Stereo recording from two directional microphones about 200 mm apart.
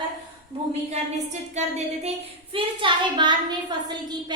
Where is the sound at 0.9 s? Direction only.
35° right (ahead or behind).